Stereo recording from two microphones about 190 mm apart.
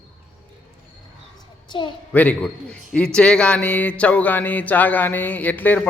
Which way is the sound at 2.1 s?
5° left (ahead or behind).